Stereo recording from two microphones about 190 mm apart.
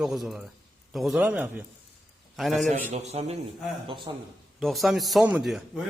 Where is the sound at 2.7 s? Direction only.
40° right (ahead or behind).